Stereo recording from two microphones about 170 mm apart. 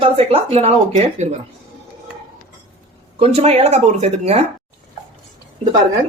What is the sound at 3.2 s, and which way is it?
Speech, 35° right (ahead or behind).